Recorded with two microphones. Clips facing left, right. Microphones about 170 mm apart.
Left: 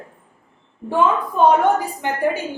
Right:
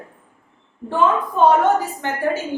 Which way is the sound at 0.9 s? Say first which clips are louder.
Even; 10° left (ahead or behind).